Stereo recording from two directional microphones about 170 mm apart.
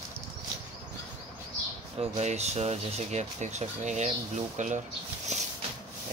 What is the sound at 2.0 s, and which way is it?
Speech, 40° right (ahead or behind).